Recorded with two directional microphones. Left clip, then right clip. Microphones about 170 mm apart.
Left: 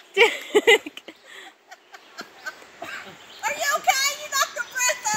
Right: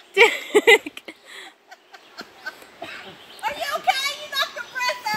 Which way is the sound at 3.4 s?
5° left (ahead or behind).